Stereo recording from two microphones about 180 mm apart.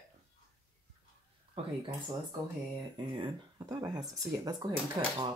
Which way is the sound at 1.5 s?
30° right (ahead or behind).